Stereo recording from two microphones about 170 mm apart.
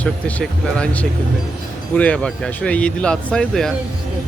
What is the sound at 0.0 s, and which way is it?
Speech, 10° left (ahead or behind).